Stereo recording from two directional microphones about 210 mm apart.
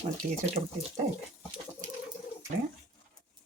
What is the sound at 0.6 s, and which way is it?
Speech, 30° right (ahead or behind).